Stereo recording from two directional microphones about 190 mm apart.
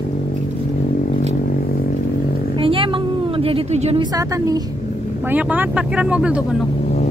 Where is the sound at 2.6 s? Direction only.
30° right (ahead or behind).